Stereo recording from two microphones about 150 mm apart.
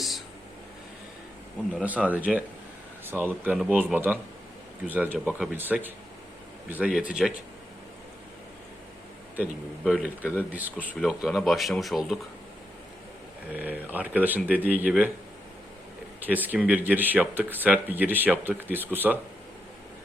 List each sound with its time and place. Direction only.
1.7 s speech: 10° right (ahead or behind)
9.8 s speech: centre (ahead or behind)
13.5 s speech: 10° right (ahead or behind)
16.2 s speech: 10° right (ahead or behind)